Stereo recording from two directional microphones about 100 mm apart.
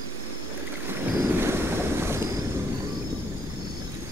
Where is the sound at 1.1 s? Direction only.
25° right (ahead or behind).